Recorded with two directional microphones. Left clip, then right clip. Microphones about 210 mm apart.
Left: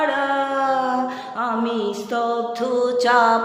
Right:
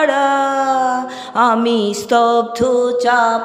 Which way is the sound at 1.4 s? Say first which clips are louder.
Right 9 dB; 45° right (ahead or behind).